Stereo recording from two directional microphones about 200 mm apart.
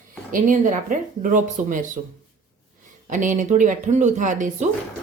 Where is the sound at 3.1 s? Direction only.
40° right (ahead or behind).